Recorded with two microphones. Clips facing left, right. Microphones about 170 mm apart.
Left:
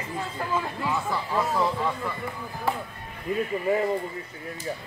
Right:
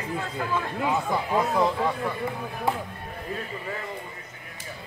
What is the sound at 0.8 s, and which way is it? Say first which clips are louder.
Speech: right 3 dB; 20° right (ahead or behind).